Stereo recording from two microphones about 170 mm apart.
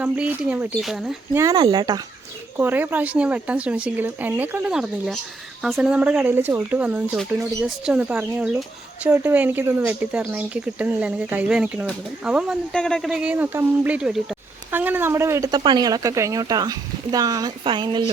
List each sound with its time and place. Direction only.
0.0 s speech: 10° right (ahead or behind)
1.4 s speech: 20° right (ahead or behind)
2.6 s speech: 10° right (ahead or behind); by 18.1 s 25° right (ahead or behind)